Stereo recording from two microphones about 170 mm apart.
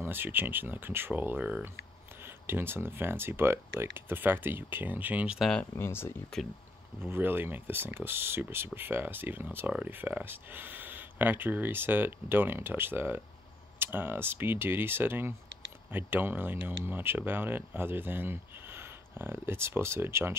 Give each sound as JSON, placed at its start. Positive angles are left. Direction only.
{"t": 0.0, "sound": "speech", "side_deg": -10}
{"t": 5.8, "sound": "speech", "side_deg": 15}
{"t": 7.1, "sound": "speech", "side_deg": -10}